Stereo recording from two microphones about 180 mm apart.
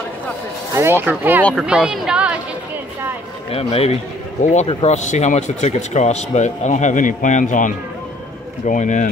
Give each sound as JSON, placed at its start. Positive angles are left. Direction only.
{"t": 0.7, "sound": "a woman's voice", "side_deg": -15}
{"t": 3.5, "sound": "speech", "side_deg": 35}